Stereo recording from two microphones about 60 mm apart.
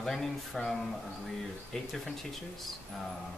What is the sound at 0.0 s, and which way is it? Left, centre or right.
Speech, centre.